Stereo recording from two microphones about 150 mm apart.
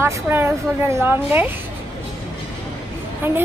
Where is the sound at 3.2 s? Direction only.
15° right (ahead or behind).